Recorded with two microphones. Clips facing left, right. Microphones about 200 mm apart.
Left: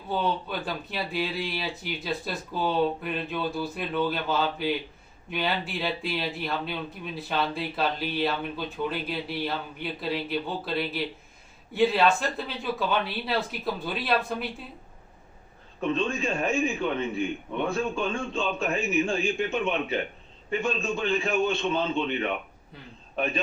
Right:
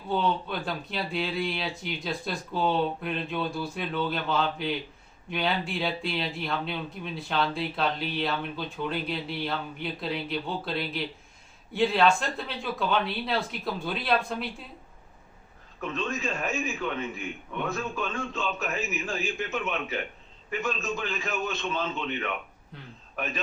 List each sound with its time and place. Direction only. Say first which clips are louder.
0.1 s speech: right 1 dB; 5° left (ahead or behind)
15.8 s a man's voice: left 5 dB; 30° left (ahead or behind)